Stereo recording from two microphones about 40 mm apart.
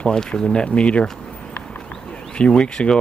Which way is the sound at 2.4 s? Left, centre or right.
Left.